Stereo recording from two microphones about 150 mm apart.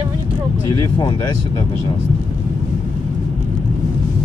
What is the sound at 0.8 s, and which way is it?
Speech, 30° left (ahead or behind).